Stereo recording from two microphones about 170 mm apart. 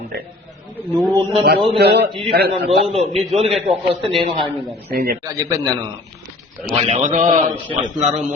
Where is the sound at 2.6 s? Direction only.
35° right (ahead or behind).